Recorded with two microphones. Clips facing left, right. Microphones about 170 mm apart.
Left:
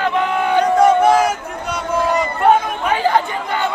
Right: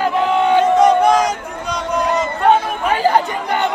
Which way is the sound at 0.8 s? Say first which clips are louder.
Even; 5° left (ahead or behind).